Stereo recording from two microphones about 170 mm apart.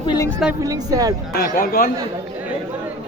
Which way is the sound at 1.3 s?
60° left (ahead or behind).